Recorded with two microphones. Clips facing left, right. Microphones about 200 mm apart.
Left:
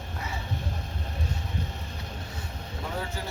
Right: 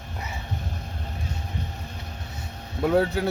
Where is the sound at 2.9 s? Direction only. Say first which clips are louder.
Right 14 dB; 65° right (ahead or behind).